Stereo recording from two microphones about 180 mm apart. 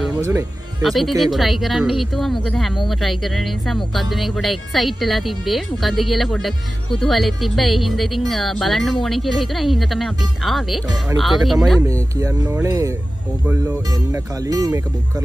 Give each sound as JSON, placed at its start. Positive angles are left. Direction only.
{"t": 0.2, "sound": "speech", "side_deg": -15}
{"t": 0.8, "sound": "speech", "side_deg": 0}
{"t": 11.8, "sound": "speech", "side_deg": -15}